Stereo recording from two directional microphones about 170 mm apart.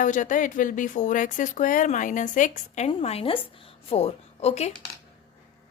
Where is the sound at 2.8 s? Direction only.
35° left (ahead or behind).